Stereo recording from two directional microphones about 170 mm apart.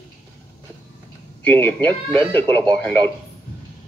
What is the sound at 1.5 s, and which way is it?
Speech, 10° left (ahead or behind).